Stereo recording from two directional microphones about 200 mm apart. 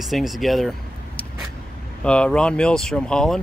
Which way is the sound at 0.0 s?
Centre (ahead or behind).